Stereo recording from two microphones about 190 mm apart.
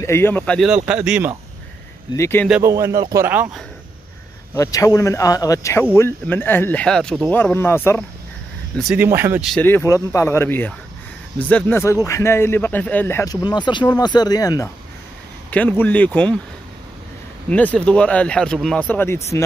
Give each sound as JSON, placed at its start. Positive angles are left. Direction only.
{"t": 0.0, "sound": "speech", "side_deg": 15}
{"t": 0.8, "sound": "speech", "side_deg": -5}
{"t": 2.1, "sound": "speech", "side_deg": 15}
{"t": 2.6, "sound": "speech", "side_deg": -15}
{"t": 4.6, "sound": "speech", "side_deg": 20}
{"t": 8.7, "sound": "speech", "side_deg": -5}
{"t": 9.5, "sound": "speech", "side_deg": 10}
{"t": 15.5, "sound": "speech", "side_deg": 10}
{"t": 17.5, "sound": "speech", "side_deg": 5}